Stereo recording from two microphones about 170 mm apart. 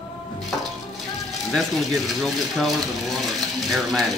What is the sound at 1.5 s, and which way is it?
Speech, centre (ahead or behind).